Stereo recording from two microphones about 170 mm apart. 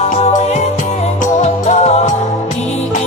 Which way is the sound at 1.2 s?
40° left (ahead or behind).